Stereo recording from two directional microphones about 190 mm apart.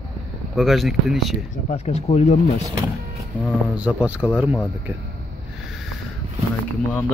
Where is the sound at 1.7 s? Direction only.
35° left (ahead or behind).